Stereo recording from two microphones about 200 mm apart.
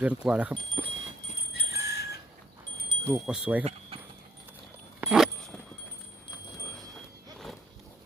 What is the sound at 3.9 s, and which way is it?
Keys jangling, 30° right (ahead or behind).